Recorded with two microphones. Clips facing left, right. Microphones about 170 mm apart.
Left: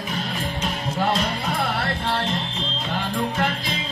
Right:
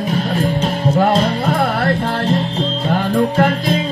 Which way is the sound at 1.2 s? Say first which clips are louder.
Right 8 dB; 55° right (ahead or behind).